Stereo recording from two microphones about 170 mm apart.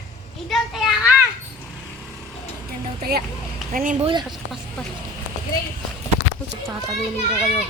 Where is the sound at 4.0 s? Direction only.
30° right (ahead or behind).